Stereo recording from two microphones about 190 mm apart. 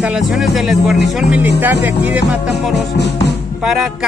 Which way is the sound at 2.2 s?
65° left (ahead or behind).